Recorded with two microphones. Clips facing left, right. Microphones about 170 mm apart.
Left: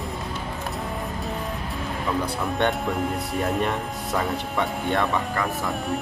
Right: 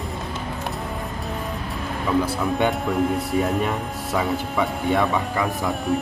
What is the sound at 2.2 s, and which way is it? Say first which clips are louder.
Speech: right 1 dB; centre (ahead or behind).